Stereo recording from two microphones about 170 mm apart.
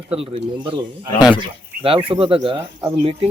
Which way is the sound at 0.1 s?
35° right (ahead or behind).